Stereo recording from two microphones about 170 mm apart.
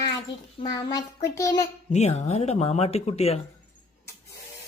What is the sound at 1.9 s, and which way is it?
Speech, 40° left (ahead or behind).